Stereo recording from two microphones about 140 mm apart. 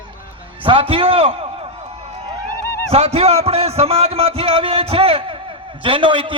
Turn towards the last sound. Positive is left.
turn(degrees=-35)  # may be behind; listen again after turning